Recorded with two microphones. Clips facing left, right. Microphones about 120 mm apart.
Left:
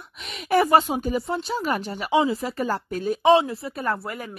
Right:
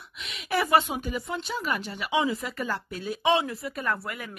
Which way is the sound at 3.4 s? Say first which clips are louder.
Left 5 dB; 30° left (ahead or behind).